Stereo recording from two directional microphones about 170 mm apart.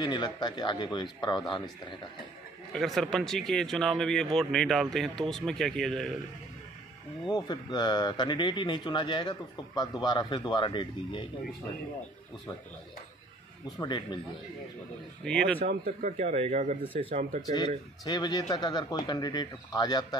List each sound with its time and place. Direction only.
0.0 s speech: 25° left (ahead or behind)
2.7 s speech: centre (ahead or behind)
7.2 s speech: 25° left (ahead or behind)
13.7 s speech: 25° left (ahead or behind)
15.2 s speech: 5° left (ahead or behind)
15.6 s speech: 50° right (ahead or behind); by 17.1 s 30° right (ahead or behind)
17.1 s speech: 40° right (ahead or behind)
17.5 s speech: 25° left (ahead or behind)